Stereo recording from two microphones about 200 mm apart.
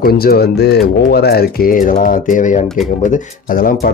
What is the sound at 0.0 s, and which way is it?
Speech, 50° left (ahead or behind).